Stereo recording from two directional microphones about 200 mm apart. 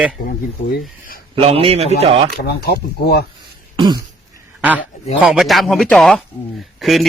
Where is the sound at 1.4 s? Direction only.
25° right (ahead or behind).